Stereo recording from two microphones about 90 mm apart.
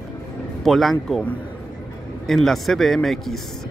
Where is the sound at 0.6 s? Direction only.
Centre (ahead or behind).